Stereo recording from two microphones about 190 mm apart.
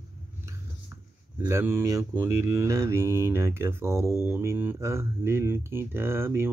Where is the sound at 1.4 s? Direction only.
15° right (ahead or behind).